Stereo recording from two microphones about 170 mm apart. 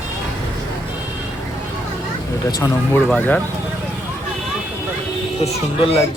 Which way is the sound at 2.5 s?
20° left (ahead or behind).